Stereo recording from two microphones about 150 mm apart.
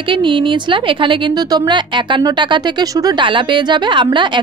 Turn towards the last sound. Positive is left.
turn(degrees=-30)  # may be behind; listen again after turning